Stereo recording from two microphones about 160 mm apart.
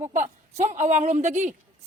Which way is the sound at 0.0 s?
50° right (ahead or behind).